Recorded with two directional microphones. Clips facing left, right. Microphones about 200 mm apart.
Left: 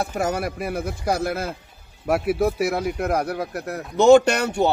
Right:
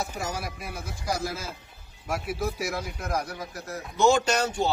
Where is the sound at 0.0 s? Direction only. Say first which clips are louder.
Left 8 dB; 60° left (ahead or behind).